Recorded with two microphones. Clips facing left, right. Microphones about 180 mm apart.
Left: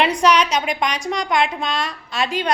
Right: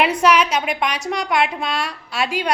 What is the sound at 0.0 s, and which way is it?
A woman's voice, 5° right (ahead or behind).